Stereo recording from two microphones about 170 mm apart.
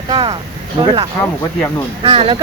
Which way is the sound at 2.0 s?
30° right (ahead or behind).